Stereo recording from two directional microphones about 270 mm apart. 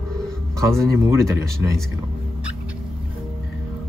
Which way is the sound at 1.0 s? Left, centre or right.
Centre.